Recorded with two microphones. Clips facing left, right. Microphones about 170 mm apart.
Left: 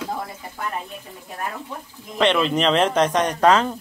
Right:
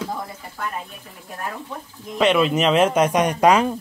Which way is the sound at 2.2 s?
5° right (ahead or behind).